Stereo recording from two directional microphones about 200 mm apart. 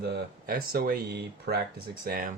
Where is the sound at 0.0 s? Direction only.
50° right (ahead or behind).